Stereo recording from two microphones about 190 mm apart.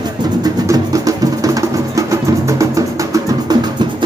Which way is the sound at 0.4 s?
15° right (ahead or behind).